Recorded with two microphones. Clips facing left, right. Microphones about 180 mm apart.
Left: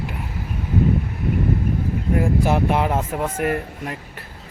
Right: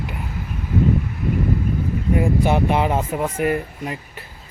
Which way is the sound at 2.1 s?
Centre (ahead or behind).